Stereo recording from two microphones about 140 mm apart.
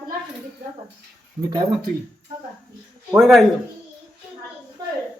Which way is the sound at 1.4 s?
30° right (ahead or behind).